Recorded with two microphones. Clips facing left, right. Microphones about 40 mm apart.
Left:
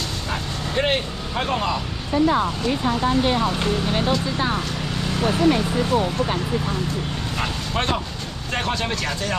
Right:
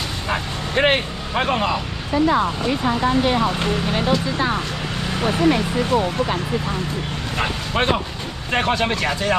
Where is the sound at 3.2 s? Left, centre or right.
Right.